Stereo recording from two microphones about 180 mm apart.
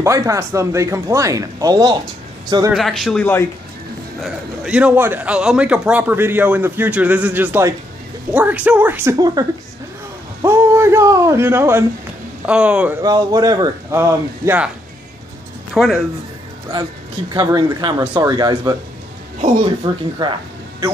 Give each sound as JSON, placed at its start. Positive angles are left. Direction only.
{"t": 0.0, "sound": "a man's voice", "side_deg": -15}
{"t": 2.7, "sound": "a man's voice", "side_deg": 0}
{"t": 4.2, "sound": "a man's voice", "side_deg": -5}
{"t": 10.4, "sound": "a sound", "side_deg": -15}
{"t": 12.4, "sound": "a man's voice", "side_deg": -5}
{"t": 13.0, "sound": "a man's voice", "side_deg": -20}
{"t": 15.7, "sound": "speech", "side_deg": 0}
{"t": 17.3, "sound": "speech", "side_deg": -20}
{"t": 19.8, "sound": "speech", "side_deg": -35}